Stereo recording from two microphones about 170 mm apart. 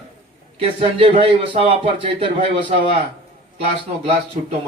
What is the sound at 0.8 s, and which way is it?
Speech, 30° right (ahead or behind).